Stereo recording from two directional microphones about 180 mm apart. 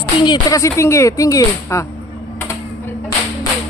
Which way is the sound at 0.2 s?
20° left (ahead or behind).